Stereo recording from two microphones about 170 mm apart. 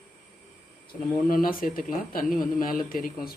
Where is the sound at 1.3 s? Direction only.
55° left (ahead or behind).